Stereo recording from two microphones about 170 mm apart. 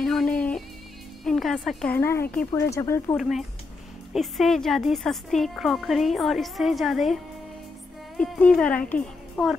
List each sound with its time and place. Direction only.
0.0 s music: 5° left (ahead or behind)
1.2 s speech: centre (ahead or behind)
2.0 s a woman's voice: 15° left (ahead or behind)
3.2 s a woman's voice: centre (ahead or behind)
8.2 s a woman's voice: 5° left (ahead or behind)